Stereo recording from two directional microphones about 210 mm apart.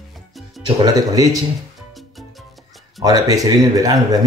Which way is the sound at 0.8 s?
15° right (ahead or behind).